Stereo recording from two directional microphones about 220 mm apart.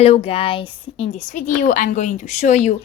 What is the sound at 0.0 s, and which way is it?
A woman's voice, 25° left (ahead or behind).